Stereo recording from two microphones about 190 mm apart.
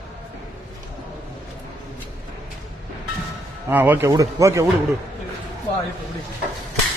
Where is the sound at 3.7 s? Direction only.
10° right (ahead or behind).